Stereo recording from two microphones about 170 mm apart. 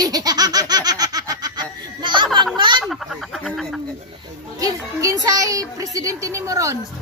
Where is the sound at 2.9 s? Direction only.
Centre (ahead or behind).